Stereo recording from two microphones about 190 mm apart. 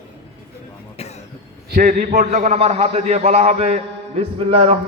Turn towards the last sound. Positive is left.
turn(degrees=-30)  # may be behind; listen again after turning